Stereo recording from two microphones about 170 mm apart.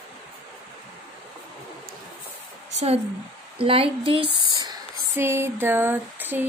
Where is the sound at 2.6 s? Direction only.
40° right (ahead or behind).